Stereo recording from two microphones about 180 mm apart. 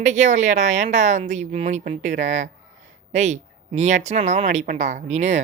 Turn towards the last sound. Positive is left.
turn(degrees=-40)  # may be behind; listen again after turning